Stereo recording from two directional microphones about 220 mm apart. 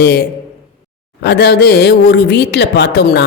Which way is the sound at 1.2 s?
50° left (ahead or behind).